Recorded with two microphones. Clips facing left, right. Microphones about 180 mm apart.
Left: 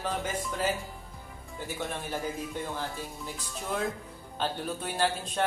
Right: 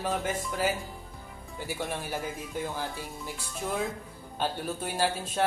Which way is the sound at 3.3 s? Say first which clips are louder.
Right 1 dB; centre (ahead or behind).